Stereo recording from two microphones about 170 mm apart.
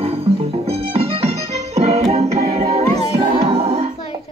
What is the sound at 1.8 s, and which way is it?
Music, 40° right (ahead or behind).